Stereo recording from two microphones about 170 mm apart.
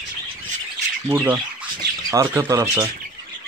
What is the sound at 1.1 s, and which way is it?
Speech, 15° right (ahead or behind).